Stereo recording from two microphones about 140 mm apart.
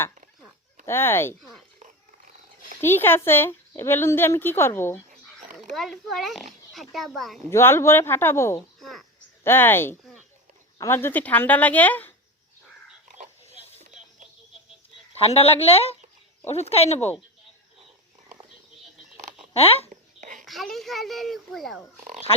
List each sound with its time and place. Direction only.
0.9 s a woman's voice: 15° left (ahead or behind)
1.4 s speech: centre (ahead or behind)
2.8 s a woman's voice: 15° left (ahead or behind)
5.7 s speech: centre (ahead or behind)
7.5 s a woman's voice: 20° left (ahead or behind)
8.8 s cricket: centre (ahead or behind)
9.4 s a woman's voice: 15° left (ahead or behind)
15.2 s speech: 45° left (ahead or behind)
19.5 s speech: 45° left (ahead or behind)
20.4 s speech: centre (ahead or behind)
22.0 s a sound: 55° right (ahead or behind)